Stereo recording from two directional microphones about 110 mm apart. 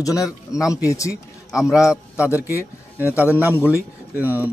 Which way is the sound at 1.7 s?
5° right (ahead or behind).